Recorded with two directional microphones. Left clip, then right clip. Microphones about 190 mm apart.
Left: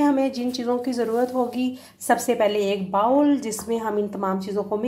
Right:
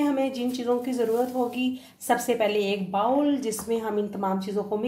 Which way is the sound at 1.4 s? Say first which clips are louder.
Left 3 dB; 25° left (ahead or behind).